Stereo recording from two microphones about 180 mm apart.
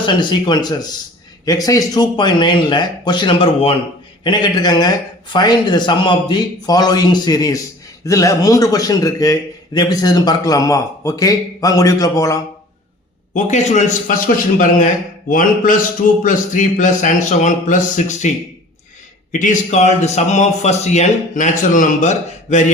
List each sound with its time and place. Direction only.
0.0 s a man's voice: 25° left (ahead or behind)
13.3 s speech: 40° left (ahead or behind)
19.3 s speech: 45° left (ahead or behind)